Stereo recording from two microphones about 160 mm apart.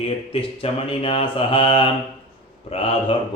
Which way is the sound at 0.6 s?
35° left (ahead or behind).